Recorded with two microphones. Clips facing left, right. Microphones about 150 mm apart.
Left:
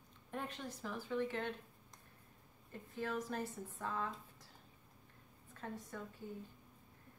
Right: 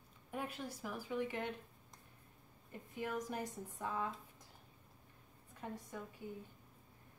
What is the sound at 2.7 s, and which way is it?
A woman's voice, 15° right (ahead or behind).